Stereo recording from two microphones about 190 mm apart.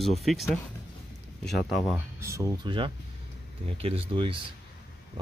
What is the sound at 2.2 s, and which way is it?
Speech, 15° right (ahead or behind).